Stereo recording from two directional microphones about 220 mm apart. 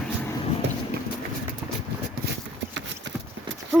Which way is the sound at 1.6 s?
5° right (ahead or behind).